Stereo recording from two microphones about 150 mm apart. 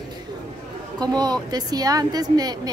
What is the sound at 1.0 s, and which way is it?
A woman's voice, 25° right (ahead or behind).